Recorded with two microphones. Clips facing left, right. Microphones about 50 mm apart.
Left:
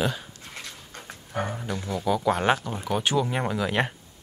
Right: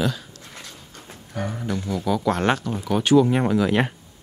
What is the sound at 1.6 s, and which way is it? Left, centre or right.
Speech, centre.